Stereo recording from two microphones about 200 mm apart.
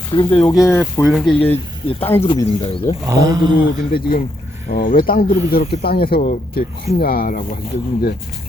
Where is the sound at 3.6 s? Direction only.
45° left (ahead or behind).